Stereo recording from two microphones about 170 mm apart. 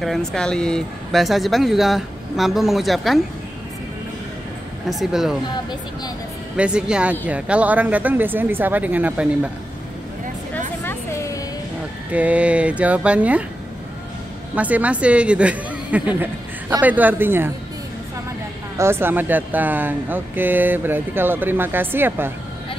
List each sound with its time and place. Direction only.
0.0 s speech: centre (ahead or behind)
4.8 s speech: centre (ahead or behind)
6.5 s speech: 5° right (ahead or behind)
10.8 s a sound: 15° left (ahead or behind)
12.1 s speech: 10° right (ahead or behind)
14.5 s speech: 10° right (ahead or behind)
18.8 s speech: 15° right (ahead or behind)